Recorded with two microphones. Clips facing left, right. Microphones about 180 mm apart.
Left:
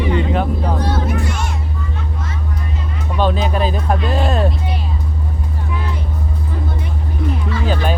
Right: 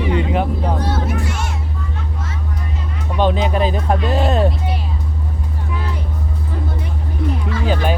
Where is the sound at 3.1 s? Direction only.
20° right (ahead or behind).